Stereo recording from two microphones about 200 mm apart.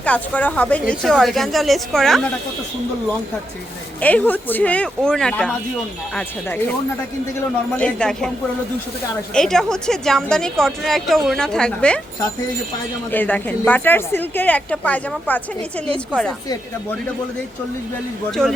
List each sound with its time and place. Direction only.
0.0 s speech: 5° left (ahead or behind)
4.0 s a woman's voice: 10° left (ahead or behind)
7.8 s speech: 5° left (ahead or behind)
9.3 s speech: centre (ahead or behind)
13.1 s a woman's voice: 10° left (ahead or behind)
18.3 s speech: centre (ahead or behind)